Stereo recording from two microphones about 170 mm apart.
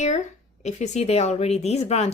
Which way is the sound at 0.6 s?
40° left (ahead or behind).